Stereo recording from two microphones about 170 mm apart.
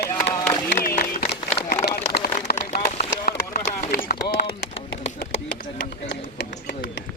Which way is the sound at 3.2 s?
60° left (ahead or behind).